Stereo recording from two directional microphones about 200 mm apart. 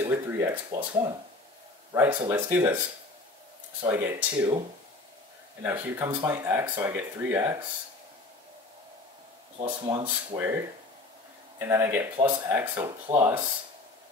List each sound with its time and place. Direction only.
0.0 s speech: 15° right (ahead or behind)
2.0 s speech: 10° right (ahead or behind)
3.9 s speech: 10° right (ahead or behind)
5.6 s speech: 10° right (ahead or behind)
9.7 s speech: 25° right (ahead or behind)
10.3 s speech: 10° right (ahead or behind)